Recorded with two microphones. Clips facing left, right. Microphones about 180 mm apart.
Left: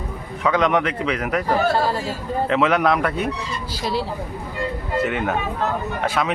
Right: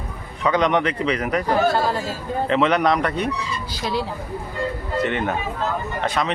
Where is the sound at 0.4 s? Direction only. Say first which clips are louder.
Even; centre (ahead or behind).